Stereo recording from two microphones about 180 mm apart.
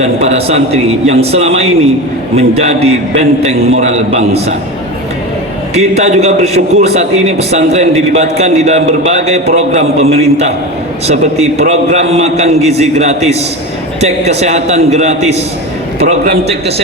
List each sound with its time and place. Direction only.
0.0 s a man's voice: 35° right (ahead or behind)
5.7 s a man's voice: 35° right (ahead or behind)